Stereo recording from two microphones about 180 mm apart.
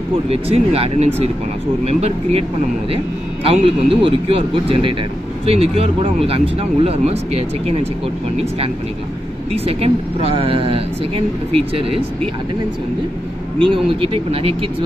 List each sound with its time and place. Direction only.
0.3 s speech: 35° right (ahead or behind)
3.4 s speech: 30° right (ahead or behind)
9.5 s speech: 35° right (ahead or behind)
13.6 s speech: 30° right (ahead or behind)